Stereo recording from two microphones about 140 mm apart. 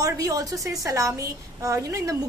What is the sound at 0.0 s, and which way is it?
A woman's voice, 25° right (ahead or behind).